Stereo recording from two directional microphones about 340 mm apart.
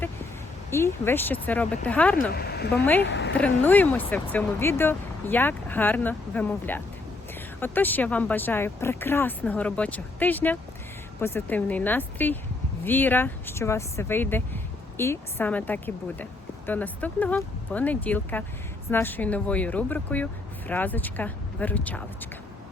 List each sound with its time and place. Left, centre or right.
0.7 s speech: centre
2.3 s speech: left
3.3 s speech: centre